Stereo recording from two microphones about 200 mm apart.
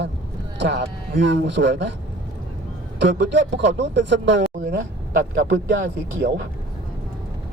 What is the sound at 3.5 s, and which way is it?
Speech, 65° right (ahead or behind).